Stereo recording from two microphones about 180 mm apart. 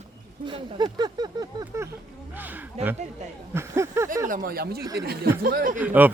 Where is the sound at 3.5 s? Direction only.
15° right (ahead or behind).